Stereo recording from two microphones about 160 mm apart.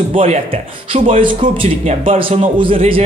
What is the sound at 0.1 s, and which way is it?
Speech, 40° right (ahead or behind).